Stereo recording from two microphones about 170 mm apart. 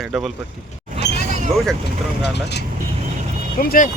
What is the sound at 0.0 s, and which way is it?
Speech, centre (ahead or behind).